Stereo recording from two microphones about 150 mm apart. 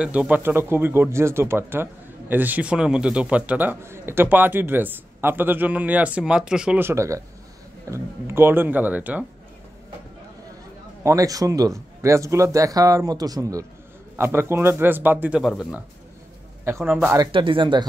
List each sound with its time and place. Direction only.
0.0 s speech: 10° right (ahead or behind)
11.1 s a man's voice: 25° right (ahead or behind); by 15.8 s 5° right (ahead or behind)
16.8 s speech: 5° right (ahead or behind)
17.3 s speech: 35° right (ahead or behind)